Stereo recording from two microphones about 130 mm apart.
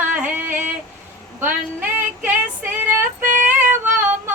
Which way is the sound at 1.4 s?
15° right (ahead or behind).